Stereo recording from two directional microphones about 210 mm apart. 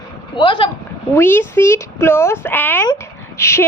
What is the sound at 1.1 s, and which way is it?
Speech, 10° left (ahead or behind).